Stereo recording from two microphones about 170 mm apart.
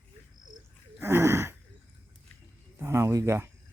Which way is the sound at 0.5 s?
15° right (ahead or behind).